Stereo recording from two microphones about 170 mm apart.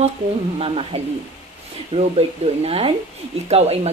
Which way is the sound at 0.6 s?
35° right (ahead or behind).